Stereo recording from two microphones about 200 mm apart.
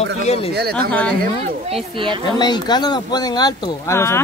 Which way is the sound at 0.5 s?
55° right (ahead or behind).